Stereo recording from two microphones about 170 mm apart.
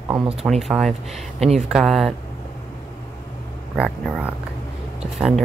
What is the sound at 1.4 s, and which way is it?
Speech, 40° right (ahead or behind).